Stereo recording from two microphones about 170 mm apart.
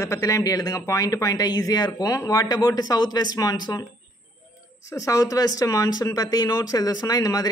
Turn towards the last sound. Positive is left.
turn(degrees=20)  # may be behind; listen again after turning